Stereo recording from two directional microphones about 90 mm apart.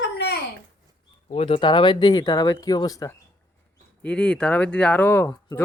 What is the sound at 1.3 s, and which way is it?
Speech, 85° left.